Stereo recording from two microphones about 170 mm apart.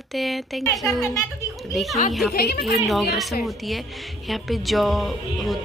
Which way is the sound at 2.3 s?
65° left (ahead or behind).